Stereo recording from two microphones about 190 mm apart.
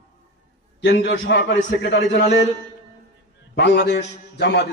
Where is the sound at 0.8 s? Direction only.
65° left (ahead or behind).